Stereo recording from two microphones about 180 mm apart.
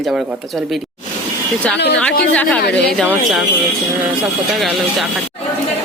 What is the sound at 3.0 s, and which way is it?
Speech, centre (ahead or behind).